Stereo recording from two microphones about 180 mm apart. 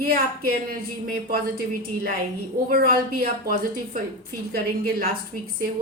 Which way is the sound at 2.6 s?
55° right (ahead or behind).